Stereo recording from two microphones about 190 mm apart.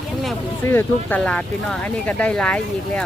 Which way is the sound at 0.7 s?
10° left (ahead or behind).